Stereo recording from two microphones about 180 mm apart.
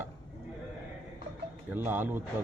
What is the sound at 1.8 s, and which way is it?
Speech, 10° right (ahead or behind).